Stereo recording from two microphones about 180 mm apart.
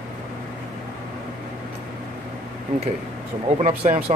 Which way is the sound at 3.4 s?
35° right (ahead or behind).